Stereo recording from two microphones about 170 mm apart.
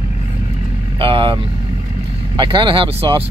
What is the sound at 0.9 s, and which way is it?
Speech, 30° right (ahead or behind).